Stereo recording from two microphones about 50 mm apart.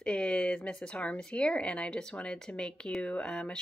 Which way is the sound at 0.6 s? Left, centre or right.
Centre.